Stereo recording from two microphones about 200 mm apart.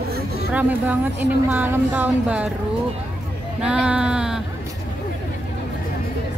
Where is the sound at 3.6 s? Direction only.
5° right (ahead or behind).